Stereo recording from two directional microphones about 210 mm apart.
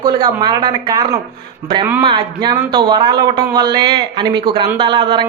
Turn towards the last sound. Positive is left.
turn(degrees=-20)  # may be behind; listen again after turning